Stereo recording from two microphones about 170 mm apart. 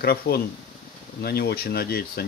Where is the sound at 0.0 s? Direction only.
65° left (ahead or behind).